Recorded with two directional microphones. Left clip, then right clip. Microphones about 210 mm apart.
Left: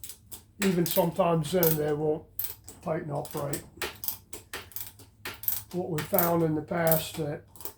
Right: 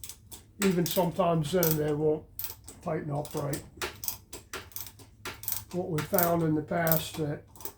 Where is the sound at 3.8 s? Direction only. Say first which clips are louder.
Left 1 dB; centre (ahead or behind).